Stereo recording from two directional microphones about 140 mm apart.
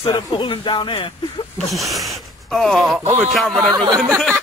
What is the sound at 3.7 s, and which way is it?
Speech, 30° right (ahead or behind).